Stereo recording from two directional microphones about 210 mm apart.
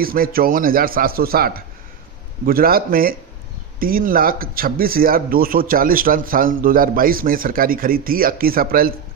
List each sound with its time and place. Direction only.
0.0 s speech: 45° right (ahead or behind)